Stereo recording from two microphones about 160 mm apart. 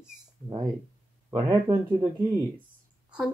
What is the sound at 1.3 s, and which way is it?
Speech, 30° right (ahead or behind).